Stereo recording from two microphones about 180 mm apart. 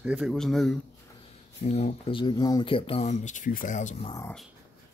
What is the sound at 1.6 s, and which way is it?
Speech, 40° left (ahead or behind).